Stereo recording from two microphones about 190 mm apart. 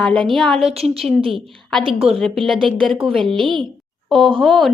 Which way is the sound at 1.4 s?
Centre (ahead or behind).